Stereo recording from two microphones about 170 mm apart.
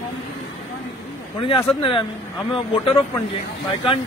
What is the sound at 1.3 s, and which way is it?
Speech, 30° left (ahead or behind).